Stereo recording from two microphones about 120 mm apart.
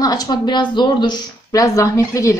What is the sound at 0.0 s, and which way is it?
A woman's voice, 30° left (ahead or behind).